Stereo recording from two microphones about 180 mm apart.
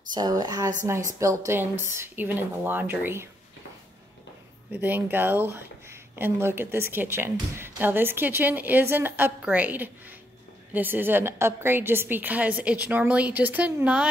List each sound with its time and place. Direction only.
0.1 s a woman's voice: 20° right (ahead or behind)
4.7 s speech: 10° right (ahead or behind)